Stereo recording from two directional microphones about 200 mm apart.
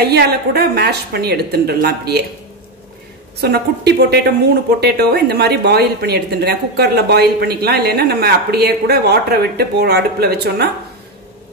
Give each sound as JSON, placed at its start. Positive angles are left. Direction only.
{"t": 0.0, "sound": "speech", "side_deg": -50}
{"t": 3.3, "sound": "speech", "side_deg": -55}